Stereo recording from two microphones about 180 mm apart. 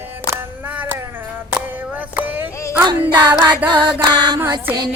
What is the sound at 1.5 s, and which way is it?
Music, 10° right (ahead or behind).